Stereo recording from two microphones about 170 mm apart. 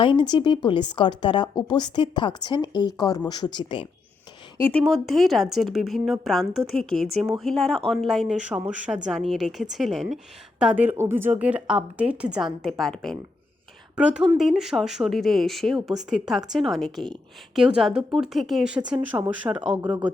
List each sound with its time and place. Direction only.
0.0 s speech: 30° left (ahead or behind)
4.6 s speech: 5° left (ahead or behind)
19.1 s speech: 20° right (ahead or behind)